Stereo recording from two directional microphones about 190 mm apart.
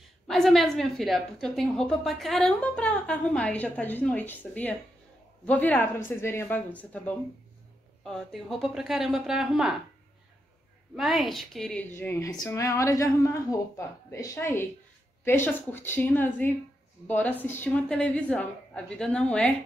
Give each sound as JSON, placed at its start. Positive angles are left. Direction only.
{"t": 0.3, "sound": "a woman's voice", "side_deg": 0}
{"t": 5.4, "sound": "a woman's voice", "side_deg": 10}
{"t": 8.0, "sound": "a woman's voice", "side_deg": 0}
{"t": 11.0, "sound": "a woman's voice", "side_deg": 0}